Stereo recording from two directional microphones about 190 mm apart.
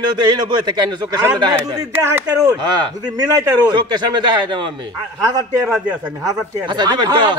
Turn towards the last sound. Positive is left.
turn(degrees=-25)  # may be behind; listen again after turning